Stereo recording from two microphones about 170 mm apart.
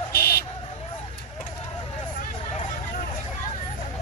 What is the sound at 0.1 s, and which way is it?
Buzzer, 70° left (ahead or behind).